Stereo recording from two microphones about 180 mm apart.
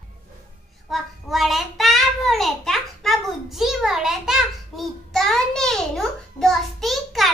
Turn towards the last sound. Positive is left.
turn(degrees=0)  # may be behind; listen again after turning